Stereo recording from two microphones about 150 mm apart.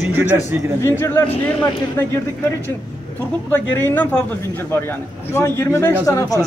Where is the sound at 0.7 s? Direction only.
15° left (ahead or behind).